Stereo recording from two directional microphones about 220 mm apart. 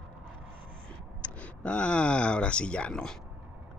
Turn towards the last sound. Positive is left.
turn(degrees=5)  # may be behind; listen again after turning